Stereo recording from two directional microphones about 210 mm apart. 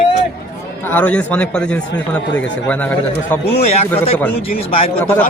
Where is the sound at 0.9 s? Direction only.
5° left (ahead or behind).